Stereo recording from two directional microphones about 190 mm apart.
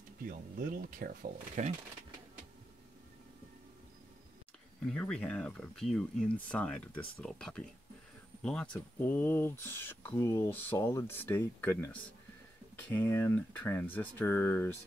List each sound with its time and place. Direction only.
0.2 s speech: 50° right (ahead or behind)
4.8 s speech: 5° left (ahead or behind)